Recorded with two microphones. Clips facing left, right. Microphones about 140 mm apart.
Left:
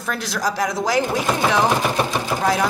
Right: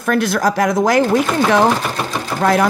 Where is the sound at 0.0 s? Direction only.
60° right (ahead or behind).